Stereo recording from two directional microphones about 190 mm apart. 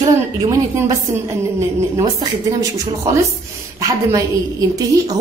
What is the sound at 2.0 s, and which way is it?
A woman's voice, 20° right (ahead or behind).